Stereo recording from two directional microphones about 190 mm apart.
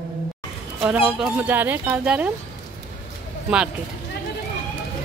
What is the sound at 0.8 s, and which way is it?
Speech, 5° right (ahead or behind).